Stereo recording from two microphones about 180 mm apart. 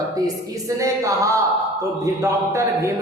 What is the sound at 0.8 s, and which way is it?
A woman's voice, 15° right (ahead or behind).